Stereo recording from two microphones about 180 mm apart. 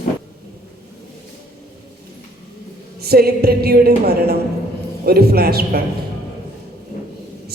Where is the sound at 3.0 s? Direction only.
60° right (ahead or behind).